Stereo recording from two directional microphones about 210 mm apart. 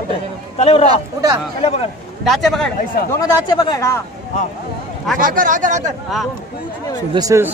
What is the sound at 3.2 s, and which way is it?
Speech, 20° left (ahead or behind).